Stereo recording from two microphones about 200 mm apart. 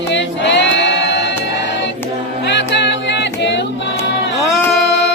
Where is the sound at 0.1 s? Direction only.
65° left (ahead or behind).